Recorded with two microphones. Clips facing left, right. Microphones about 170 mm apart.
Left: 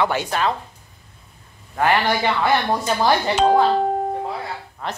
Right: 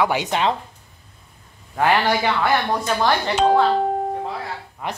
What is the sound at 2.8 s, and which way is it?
Speech, 10° left (ahead or behind).